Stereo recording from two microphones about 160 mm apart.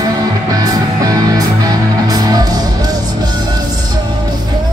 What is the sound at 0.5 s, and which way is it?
Music, 25° right (ahead or behind).